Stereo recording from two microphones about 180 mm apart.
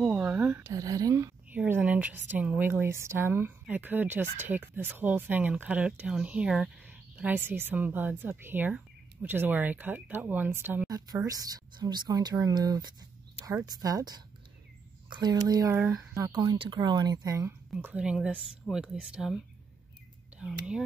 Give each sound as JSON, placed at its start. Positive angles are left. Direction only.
{"t": 0.0, "sound": "a sound", "side_deg": -5}
{"t": 1.6, "sound": "a woman's voice", "side_deg": -10}
{"t": 15.8, "sound": "speech", "side_deg": -5}
{"t": 16.2, "sound": "speech", "side_deg": -20}
{"t": 17.7, "sound": "speech", "side_deg": -5}